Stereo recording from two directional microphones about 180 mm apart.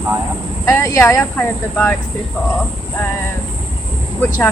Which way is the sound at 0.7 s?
15° left (ahead or behind).